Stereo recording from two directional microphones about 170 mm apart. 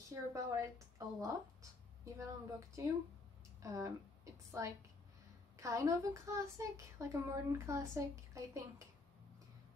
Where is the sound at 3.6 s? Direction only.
20° right (ahead or behind).